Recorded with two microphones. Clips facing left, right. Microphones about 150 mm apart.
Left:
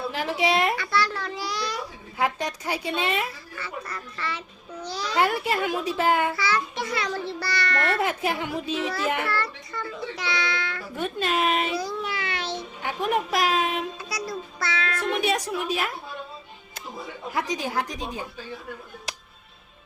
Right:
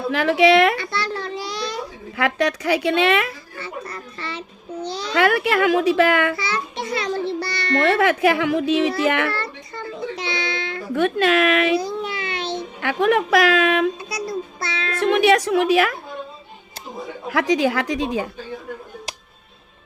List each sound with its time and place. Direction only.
0.1 s speech: 75° right (ahead or behind)
0.8 s a sound: 25° right (ahead or behind)
2.1 s a woman's voice: 75° right (ahead or behind)
3.6 s babbling: 25° right (ahead or behind)
5.1 s a woman's voice: 75° right (ahead or behind)
6.3 s music: 25° right (ahead or behind)
7.8 s speech: 75° right (ahead or behind)
9.3 s a sound: 25° right (ahead or behind)
10.9 s a woman's voice: 80° right
11.8 s a sound: 20° right (ahead or behind)
12.8 s a woman's voice: 85° right
14.0 s music: 25° right (ahead or behind)
15.0 s a woman's voice: 80° right
17.2 s a woman's voice: 90° right